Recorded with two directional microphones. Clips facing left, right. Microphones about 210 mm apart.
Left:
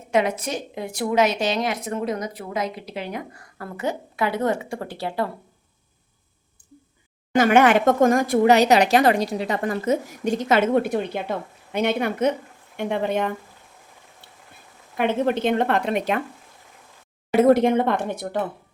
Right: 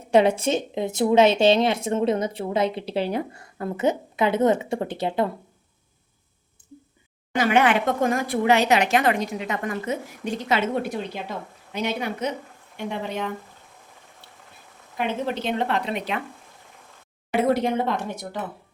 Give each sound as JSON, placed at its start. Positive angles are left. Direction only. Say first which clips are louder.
{"t": 0.1, "sound": "a woman's voice", "louder": "right 4 dB", "side_deg": -30}
{"t": 6.6, "sound": "a sound", "louder": "right 5 dB", "side_deg": -25}
{"t": 7.3, "sound": "speech", "louder": "left 4 dB", "side_deg": 45}
{"t": 14.9, "sound": "speech", "louder": "left 5 dB", "side_deg": 55}
{"t": 17.4, "sound": "speech", "louder": "left 6 dB", "side_deg": 50}